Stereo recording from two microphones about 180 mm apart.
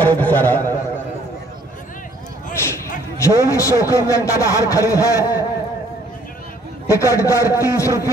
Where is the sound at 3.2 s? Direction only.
15° left (ahead or behind).